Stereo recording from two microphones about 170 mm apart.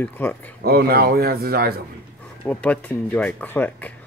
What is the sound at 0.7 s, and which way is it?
Speech, 65° right (ahead or behind).